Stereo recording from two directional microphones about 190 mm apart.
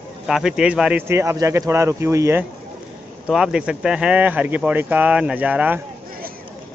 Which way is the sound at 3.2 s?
5° right (ahead or behind).